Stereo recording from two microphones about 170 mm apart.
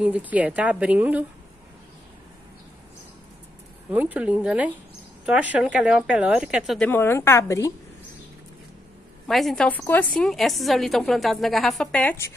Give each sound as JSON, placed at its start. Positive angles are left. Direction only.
{"t": 0.0, "sound": "a woman's voice", "side_deg": -10}
{"t": 3.9, "sound": "a woman's voice", "side_deg": -10}
{"t": 6.9, "sound": "a woman's voice", "side_deg": 15}
{"t": 9.3, "sound": "a woman's voice", "side_deg": 0}